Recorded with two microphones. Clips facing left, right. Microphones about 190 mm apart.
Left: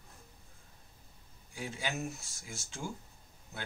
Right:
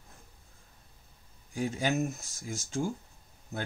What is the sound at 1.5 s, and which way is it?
Speech, 45° right (ahead or behind).